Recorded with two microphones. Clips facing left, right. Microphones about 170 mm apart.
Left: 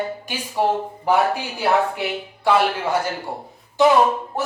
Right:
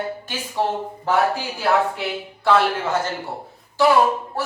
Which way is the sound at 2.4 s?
10° left (ahead or behind).